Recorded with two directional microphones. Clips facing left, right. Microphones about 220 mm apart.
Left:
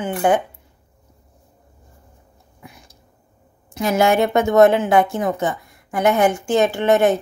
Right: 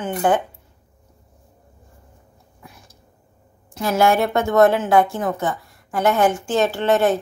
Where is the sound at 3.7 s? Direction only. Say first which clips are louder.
Left 1 dB; 15° left (ahead or behind).